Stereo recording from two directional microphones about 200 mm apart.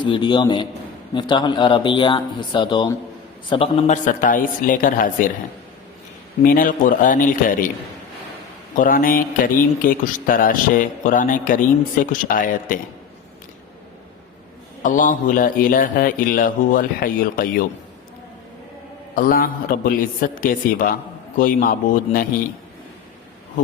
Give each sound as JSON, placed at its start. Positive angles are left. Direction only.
{"t": 0.0, "sound": "speech", "side_deg": 25}
{"t": 6.4, "sound": "speech", "side_deg": 45}
{"t": 8.7, "sound": "speech", "side_deg": 40}
{"t": 14.8, "sound": "speech", "side_deg": 40}
{"t": 19.1, "sound": "speech", "side_deg": 45}